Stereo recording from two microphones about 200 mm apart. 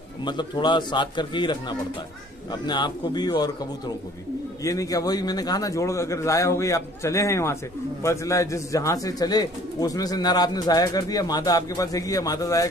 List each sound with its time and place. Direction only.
0.2 s a man's voice: 20° left (ahead or behind)